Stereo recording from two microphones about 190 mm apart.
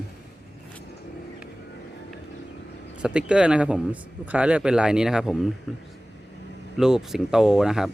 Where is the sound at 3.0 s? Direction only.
5° right (ahead or behind).